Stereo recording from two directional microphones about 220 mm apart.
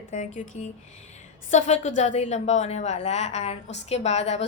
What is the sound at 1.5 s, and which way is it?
A woman's voice, 30° left (ahead or behind).